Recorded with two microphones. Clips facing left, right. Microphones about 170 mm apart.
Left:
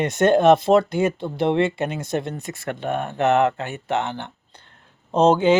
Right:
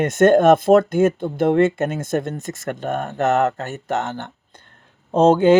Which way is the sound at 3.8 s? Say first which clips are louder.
Even; 45° right (ahead or behind).